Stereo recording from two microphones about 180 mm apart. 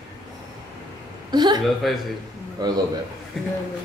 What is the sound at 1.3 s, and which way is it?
Speech, 25° right (ahead or behind).